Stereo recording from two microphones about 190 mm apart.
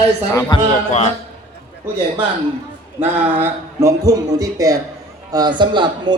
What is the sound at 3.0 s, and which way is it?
A man's voice, 10° right (ahead or behind).